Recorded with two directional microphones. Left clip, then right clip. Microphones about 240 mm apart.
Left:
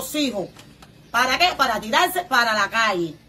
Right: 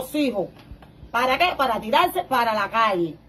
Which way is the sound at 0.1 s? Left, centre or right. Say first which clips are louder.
Even; centre.